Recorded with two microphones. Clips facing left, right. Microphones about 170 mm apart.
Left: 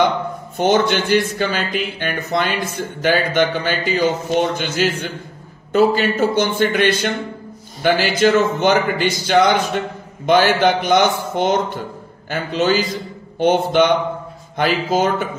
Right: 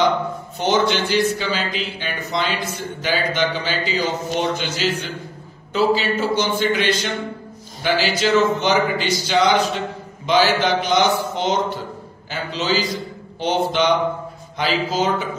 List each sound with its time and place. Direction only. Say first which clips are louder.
0.6 s speech: left 3 dB; 55° left (ahead or behind)